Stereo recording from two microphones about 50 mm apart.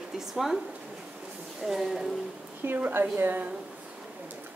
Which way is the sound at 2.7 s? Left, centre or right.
Right.